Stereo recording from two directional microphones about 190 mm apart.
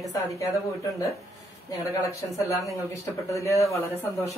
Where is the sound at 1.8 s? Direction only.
15° left (ahead or behind).